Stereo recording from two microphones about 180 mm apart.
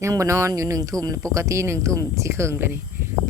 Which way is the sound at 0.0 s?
15° right (ahead or behind).